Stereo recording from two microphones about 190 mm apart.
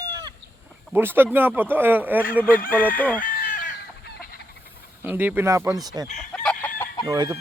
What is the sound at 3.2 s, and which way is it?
Chicken, 45° left (ahead or behind).